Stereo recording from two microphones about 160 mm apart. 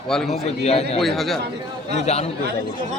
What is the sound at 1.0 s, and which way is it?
Speech, centre (ahead or behind).